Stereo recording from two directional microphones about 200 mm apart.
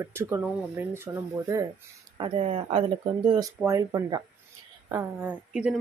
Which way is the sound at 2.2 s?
30° right (ahead or behind).